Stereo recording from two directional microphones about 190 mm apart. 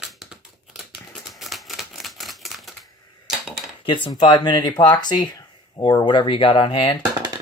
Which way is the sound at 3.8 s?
25° left (ahead or behind).